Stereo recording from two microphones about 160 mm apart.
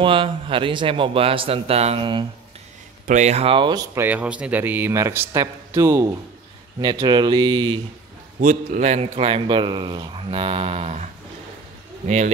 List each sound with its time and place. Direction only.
0.0 s a man's voice: 35° right (ahead or behind)
3.1 s a man's voice: 45° right (ahead or behind); by 3.8 s 30° right (ahead or behind)
3.9 s speech: 10° right (ahead or behind); by 7.8 s 30° right (ahead or behind)
8.4 s a man's voice: 50° right (ahead or behind)